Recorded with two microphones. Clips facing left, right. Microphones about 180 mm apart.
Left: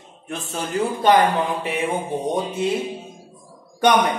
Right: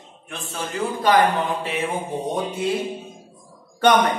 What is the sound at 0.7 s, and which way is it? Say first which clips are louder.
Speech: left 3 dB; centre (ahead or behind).